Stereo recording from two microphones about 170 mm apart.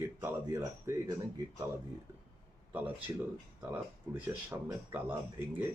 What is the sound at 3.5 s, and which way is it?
Speech, 10° right (ahead or behind).